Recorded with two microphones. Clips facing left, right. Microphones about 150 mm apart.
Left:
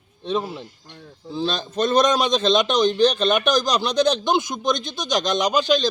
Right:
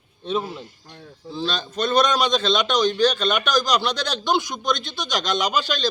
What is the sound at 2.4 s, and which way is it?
A man's voice, 20° left (ahead or behind).